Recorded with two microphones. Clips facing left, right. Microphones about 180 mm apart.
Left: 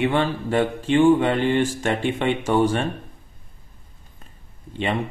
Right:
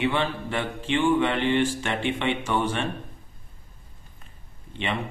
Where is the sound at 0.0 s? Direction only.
45° left (ahead or behind).